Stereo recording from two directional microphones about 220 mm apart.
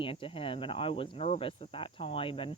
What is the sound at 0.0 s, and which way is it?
Speech, 25° left (ahead or behind).